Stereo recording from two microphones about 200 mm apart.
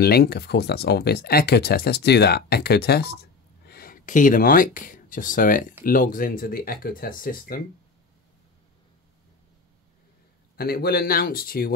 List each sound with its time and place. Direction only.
0.0 s speech: 55° left (ahead or behind)
10.5 s speech: 50° left (ahead or behind)